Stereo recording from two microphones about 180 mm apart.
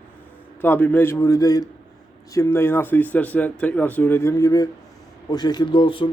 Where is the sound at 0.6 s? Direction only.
10° left (ahead or behind); by 6.1 s 30° left (ahead or behind).